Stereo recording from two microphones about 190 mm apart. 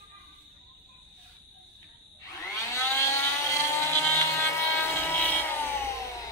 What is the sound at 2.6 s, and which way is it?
Vehicle, 15° left (ahead or behind).